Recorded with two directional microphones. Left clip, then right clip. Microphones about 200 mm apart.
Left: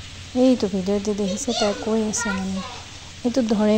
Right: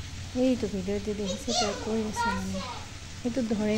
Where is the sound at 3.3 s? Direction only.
20° left (ahead or behind).